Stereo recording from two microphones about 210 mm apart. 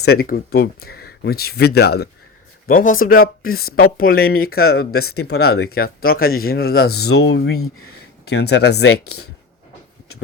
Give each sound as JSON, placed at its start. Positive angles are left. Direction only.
{"t": 0.0, "sound": "speech", "side_deg": 45}
{"t": 7.0, "sound": "speech", "side_deg": 90}
{"t": 7.3, "sound": "speech", "side_deg": 50}